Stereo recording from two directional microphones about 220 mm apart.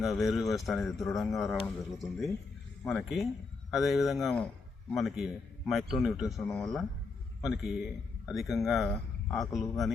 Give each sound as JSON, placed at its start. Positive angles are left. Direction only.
{"t": 0.0, "sound": "speech", "side_deg": 0}